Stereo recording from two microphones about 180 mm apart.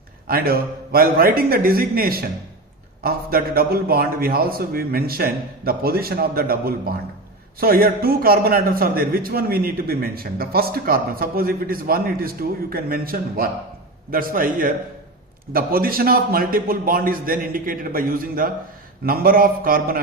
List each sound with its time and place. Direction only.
0.3 s a man's voice: 55° right (ahead or behind)